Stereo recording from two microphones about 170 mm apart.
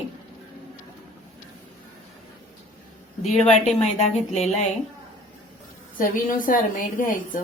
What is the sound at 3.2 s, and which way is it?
Speech, 40° left (ahead or behind).